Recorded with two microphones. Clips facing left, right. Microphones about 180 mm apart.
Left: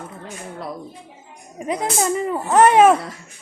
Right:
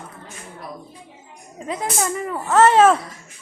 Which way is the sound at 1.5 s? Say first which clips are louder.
Left 3 dB; 20° left (ahead or behind).